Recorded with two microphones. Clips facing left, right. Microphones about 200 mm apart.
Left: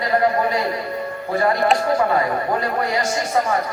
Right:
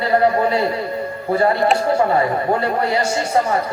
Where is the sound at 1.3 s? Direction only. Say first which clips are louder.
Right 2 dB; 30° right (ahead or behind).